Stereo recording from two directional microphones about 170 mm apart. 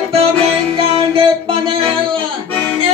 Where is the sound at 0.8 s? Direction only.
35° right (ahead or behind).